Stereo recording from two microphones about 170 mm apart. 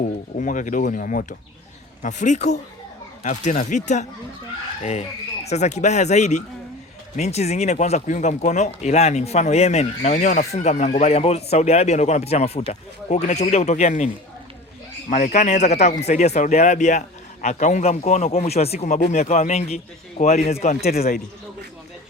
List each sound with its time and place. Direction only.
0.3 s speech: 50° left (ahead or behind)
15.1 s speech: 45° left (ahead or behind)